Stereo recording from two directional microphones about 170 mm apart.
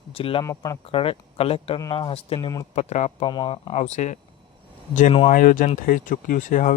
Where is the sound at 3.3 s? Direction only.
25° left (ahead or behind); by 4.2 s 45° left (ahead or behind).